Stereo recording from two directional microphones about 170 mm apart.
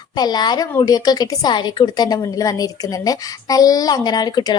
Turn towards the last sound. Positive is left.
turn(degrees=25)  # may be behind; listen again after turning